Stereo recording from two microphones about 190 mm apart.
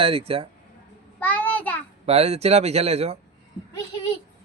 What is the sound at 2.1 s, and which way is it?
A man's voice, 35° right (ahead or behind).